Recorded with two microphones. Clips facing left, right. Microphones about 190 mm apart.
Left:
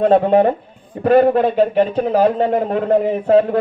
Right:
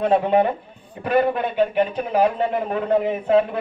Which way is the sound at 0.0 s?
35° left (ahead or behind).